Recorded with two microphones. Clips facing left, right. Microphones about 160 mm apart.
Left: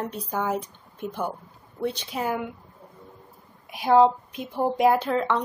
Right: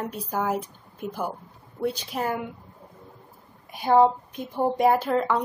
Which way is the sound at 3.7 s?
Centre (ahead or behind).